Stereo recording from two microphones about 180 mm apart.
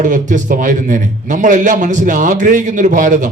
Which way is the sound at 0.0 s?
45° right (ahead or behind).